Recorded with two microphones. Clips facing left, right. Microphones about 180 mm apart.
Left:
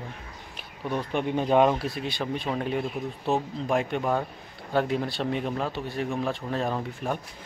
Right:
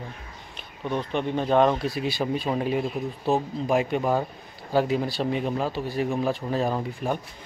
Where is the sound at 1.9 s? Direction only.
5° right (ahead or behind).